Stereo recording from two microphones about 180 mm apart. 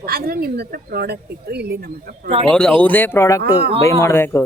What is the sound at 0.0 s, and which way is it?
Speech, 55° right (ahead or behind).